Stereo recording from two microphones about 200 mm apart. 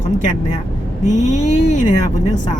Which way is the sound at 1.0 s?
35° left (ahead or behind).